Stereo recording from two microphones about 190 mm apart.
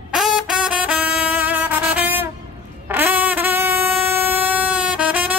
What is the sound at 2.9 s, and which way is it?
Train, 10° right (ahead or behind).